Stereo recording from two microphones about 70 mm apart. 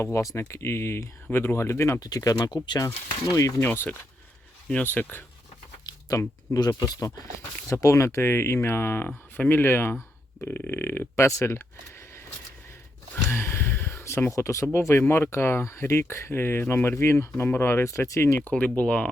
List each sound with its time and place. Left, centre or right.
0.0 s speech: left
2.0 s speech: left
3.6 s speech: left
5.8 s a sound: left
6.7 s speech: left
7.3 s speech: left
11.3 s speech: left
13.3 s a sound: left
14.3 s speech: left
17.8 s speech: left
18.8 s speech: centre